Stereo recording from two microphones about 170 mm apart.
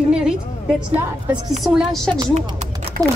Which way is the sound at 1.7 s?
5° left (ahead or behind).